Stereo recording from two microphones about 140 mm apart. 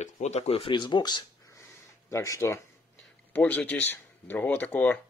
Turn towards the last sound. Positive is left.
turn(degrees=10)  # may be behind; listen again after turning